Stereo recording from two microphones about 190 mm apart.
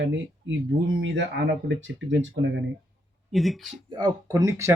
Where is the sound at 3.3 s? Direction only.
Centre (ahead or behind).